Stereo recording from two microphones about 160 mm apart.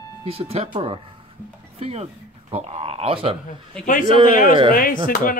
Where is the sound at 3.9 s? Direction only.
55° left (ahead or behind).